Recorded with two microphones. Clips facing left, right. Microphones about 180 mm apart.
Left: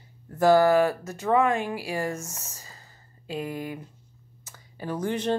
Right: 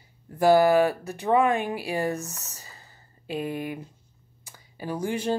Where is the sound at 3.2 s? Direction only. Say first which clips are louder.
Right 2 dB; 20° right (ahead or behind).